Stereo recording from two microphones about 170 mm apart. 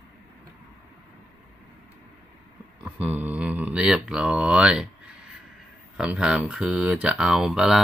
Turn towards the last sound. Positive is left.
turn(degrees=0)  # may be behind; listen again after turning